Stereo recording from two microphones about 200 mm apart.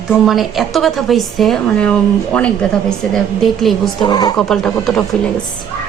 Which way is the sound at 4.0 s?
20° left (ahead or behind).